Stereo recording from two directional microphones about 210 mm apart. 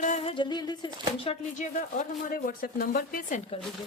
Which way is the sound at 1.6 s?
40° left (ahead or behind).